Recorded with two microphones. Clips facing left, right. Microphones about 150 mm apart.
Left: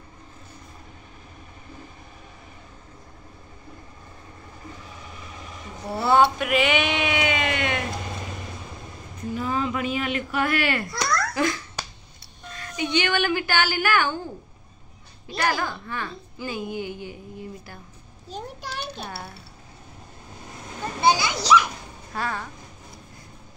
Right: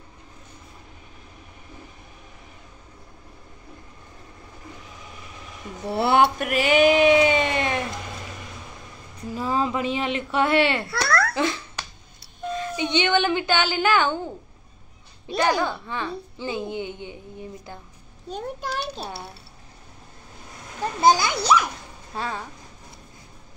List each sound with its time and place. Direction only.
5.9 s a sound: 70° right (ahead or behind)
6.4 s a sound: 40° right (ahead or behind)
9.3 s speech: 35° right (ahead or behind)
10.9 s giggle: 60° right (ahead or behind)
11.3 s a woman's voice: 25° right (ahead or behind)
15.4 s a woman's voice: 20° right (ahead or behind)
18.6 s a child's voice: 40° right (ahead or behind)
21.0 s a child's voice: 45° right (ahead or behind)
22.1 s speech: 20° right (ahead or behind)